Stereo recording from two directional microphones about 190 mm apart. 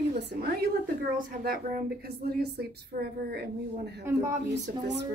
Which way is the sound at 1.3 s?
50° right (ahead or behind).